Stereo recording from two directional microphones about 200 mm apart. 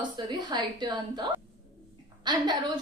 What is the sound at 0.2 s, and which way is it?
A woman's voice, 20° right (ahead or behind).